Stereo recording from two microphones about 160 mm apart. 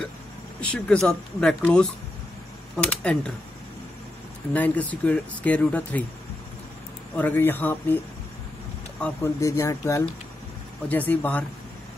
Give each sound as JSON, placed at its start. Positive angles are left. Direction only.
{"t": 0.6, "sound": "speech", "side_deg": 5}
{"t": 4.6, "sound": "speech", "side_deg": 10}
{"t": 7.2, "sound": "speech", "side_deg": 10}
{"t": 9.2, "sound": "speech", "side_deg": 20}